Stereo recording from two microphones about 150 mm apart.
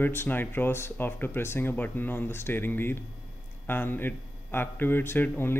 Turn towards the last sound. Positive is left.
turn(degrees=15)  # may be behind; listen again after turning